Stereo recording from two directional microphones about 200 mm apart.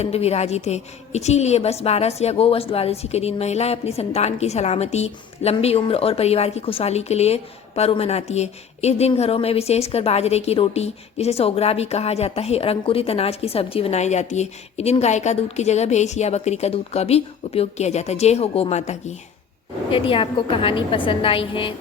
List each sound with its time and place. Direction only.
0.0 s a woman's voice: 30° left (ahead or behind)